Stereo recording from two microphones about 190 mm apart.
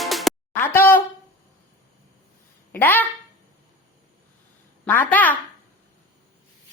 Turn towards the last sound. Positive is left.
turn(degrees=10)  # may be behind; listen again after turning